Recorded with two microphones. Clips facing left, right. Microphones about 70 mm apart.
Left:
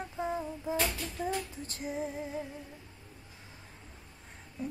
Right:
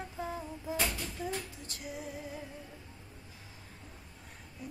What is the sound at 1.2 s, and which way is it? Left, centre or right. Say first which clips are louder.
Female singing: left 6 dB; left.